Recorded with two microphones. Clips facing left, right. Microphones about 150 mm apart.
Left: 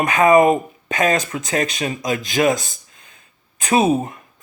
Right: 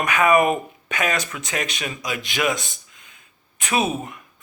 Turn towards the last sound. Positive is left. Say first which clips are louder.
# left 7 dB
turn(degrees=35)  # may be behind; listen again after turning